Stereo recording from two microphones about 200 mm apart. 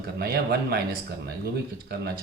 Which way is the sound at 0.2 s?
50° right (ahead or behind).